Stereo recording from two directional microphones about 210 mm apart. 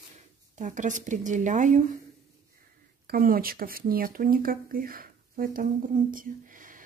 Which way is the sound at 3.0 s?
45° right (ahead or behind).